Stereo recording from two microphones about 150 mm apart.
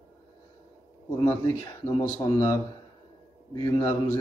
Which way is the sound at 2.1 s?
25° left (ahead or behind).